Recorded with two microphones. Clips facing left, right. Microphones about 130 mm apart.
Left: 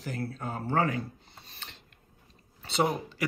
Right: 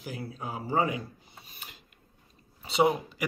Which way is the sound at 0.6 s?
65° left (ahead or behind).